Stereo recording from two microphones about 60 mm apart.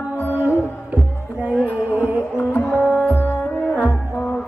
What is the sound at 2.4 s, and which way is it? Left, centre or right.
Music, left.